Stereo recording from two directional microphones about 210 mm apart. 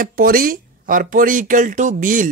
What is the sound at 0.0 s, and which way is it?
Speech, 45° right (ahead or behind).